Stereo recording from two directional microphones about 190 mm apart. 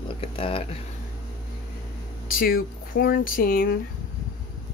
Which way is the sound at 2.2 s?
50° left (ahead or behind).